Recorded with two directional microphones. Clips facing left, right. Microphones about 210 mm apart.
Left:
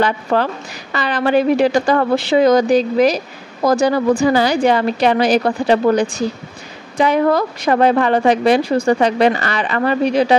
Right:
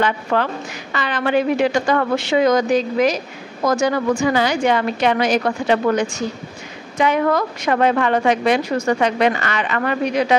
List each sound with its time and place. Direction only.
0.0 s a woman's voice: 35° left (ahead or behind)